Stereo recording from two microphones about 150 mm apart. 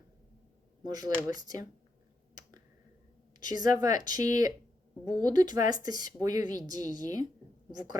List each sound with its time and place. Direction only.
0.9 s speech: 25° right (ahead or behind)
3.5 s speech: 25° right (ahead or behind)